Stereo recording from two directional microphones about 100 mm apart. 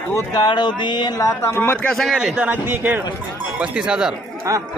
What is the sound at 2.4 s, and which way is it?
Speech, 20° right (ahead or behind).